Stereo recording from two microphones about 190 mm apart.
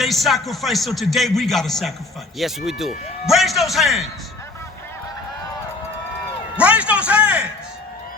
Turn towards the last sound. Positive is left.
turn(degrees=-5)  # may be behind; listen again after turning